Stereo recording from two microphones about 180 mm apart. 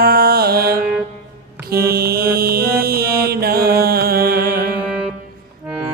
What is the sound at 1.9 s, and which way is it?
Mantra, 60° right (ahead or behind).